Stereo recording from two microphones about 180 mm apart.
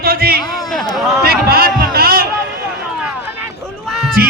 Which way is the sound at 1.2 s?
60° right (ahead or behind).